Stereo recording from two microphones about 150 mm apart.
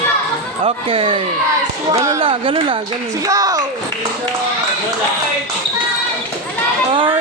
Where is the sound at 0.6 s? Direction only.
40° right (ahead or behind).